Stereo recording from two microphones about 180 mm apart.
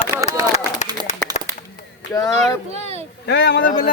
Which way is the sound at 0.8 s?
20° right (ahead or behind).